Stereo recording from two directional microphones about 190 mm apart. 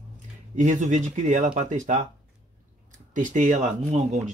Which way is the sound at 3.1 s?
40° right (ahead or behind).